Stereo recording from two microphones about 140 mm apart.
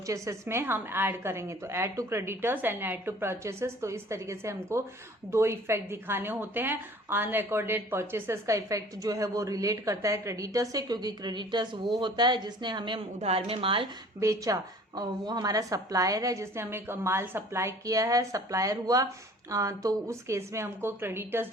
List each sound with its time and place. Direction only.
0.1 s a woman's voice: 20° right (ahead or behind)
13.1 s a woman's voice: 45° right (ahead or behind)
14.2 s a woman's voice: 25° right (ahead or behind)